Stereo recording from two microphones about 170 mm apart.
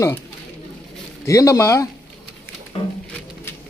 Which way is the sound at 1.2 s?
20° left (ahead or behind).